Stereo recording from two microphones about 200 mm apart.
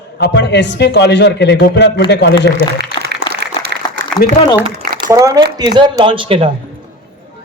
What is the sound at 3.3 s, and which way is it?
Applause, 55° right (ahead or behind).